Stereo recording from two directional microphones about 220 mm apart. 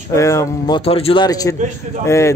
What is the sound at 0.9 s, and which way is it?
A man's voice, 25° left (ahead or behind).